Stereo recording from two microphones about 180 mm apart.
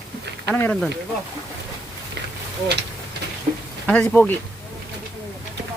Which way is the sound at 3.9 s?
10° left (ahead or behind).